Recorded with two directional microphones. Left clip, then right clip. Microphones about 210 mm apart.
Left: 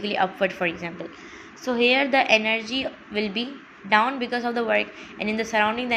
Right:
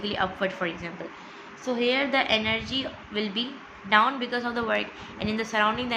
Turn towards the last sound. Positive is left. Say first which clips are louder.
# left 2 dB
turn(degrees=15)  # may be behind; listen again after turning